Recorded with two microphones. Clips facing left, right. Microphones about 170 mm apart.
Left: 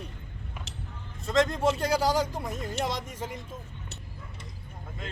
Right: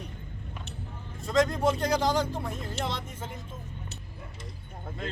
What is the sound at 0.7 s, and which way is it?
Vehicle, 90° left.